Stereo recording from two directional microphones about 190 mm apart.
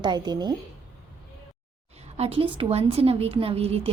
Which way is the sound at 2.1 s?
30° right (ahead or behind).